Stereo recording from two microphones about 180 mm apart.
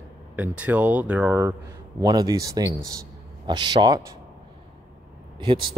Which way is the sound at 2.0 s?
20° right (ahead or behind).